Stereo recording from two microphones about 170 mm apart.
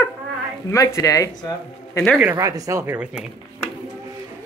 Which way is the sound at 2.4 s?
20° right (ahead or behind).